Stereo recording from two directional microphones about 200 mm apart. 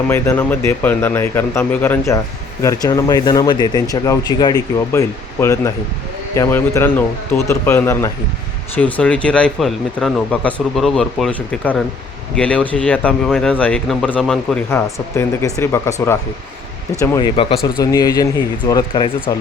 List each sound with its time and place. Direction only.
0.1 s speech: 10° left (ahead or behind)
17.0 s speech: 25° left (ahead or behind)